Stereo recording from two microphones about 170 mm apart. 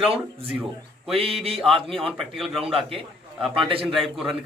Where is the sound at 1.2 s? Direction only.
35° right (ahead or behind).